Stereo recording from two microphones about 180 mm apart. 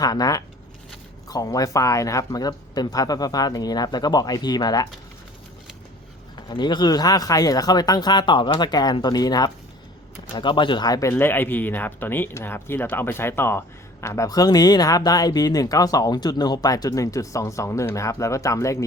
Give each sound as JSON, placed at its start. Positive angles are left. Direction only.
{"t": 0.0, "sound": "speech", "side_deg": 20}
{"t": 6.3, "sound": "speech", "side_deg": 25}